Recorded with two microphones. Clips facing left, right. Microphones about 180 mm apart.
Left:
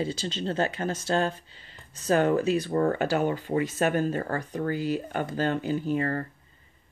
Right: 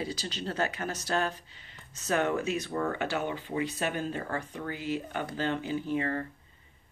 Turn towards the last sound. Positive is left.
turn(degrees=40)  # may be behind; listen again after turning